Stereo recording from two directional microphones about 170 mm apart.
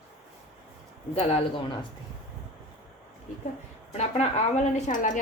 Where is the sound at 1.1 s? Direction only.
35° left (ahead or behind).